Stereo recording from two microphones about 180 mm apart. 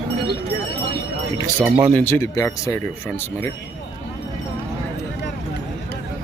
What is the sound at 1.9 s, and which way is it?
Speech, 10° left (ahead or behind).